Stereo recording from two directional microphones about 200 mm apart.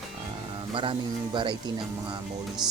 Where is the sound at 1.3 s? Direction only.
25° right (ahead or behind).